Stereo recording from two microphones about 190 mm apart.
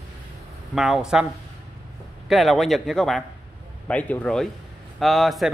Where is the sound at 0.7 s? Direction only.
5° right (ahead or behind).